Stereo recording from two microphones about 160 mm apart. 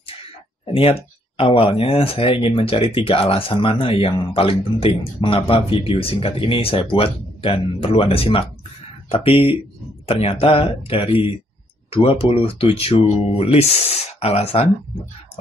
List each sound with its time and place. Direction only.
0.7 s speech: 35° left (ahead or behind)